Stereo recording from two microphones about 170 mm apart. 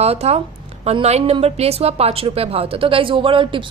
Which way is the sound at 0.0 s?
40° right (ahead or behind).